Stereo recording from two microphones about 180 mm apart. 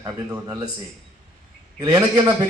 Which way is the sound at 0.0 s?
20° right (ahead or behind).